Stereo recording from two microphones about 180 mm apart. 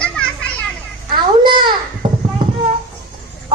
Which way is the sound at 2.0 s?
25° right (ahead or behind).